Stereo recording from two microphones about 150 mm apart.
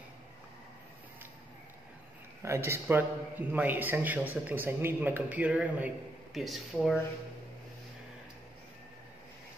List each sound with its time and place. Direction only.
2.4 s a man's voice: 20° right (ahead or behind); by 7.0 s centre (ahead or behind)